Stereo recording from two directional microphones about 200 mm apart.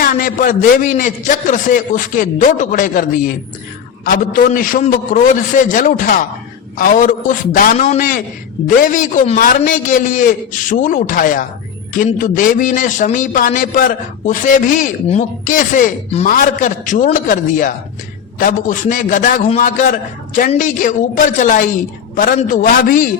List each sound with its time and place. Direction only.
0.0 s a man's voice: 45° left (ahead or behind)